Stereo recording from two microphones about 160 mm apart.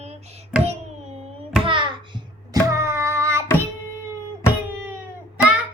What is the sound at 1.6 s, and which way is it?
Child singing, 30° right (ahead or behind).